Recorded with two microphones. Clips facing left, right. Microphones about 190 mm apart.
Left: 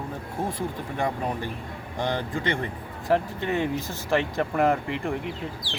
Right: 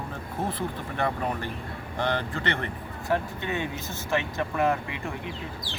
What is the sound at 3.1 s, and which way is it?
Speech, 35° left (ahead or behind).